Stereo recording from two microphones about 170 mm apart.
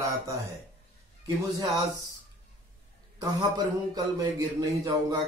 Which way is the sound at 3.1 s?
20° right (ahead or behind).